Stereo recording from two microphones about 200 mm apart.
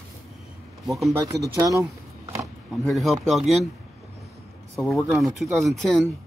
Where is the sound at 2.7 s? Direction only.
Centre (ahead or behind).